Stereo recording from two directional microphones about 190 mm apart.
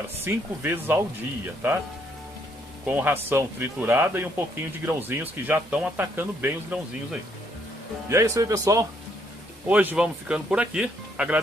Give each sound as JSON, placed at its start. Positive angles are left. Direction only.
{"t": 0.2, "sound": "speech", "side_deg": -10}
{"t": 2.9, "sound": "speech", "side_deg": -10}